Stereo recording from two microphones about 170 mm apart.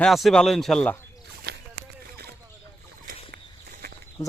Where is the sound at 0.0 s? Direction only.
Centre (ahead or behind).